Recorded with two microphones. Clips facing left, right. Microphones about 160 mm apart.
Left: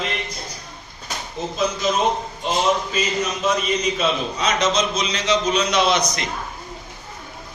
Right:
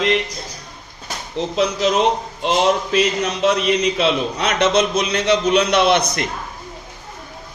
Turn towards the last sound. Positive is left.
turn(degrees=-60)  # may be behind; listen again after turning